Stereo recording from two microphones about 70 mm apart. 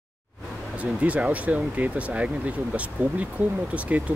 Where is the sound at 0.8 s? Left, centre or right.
Centre.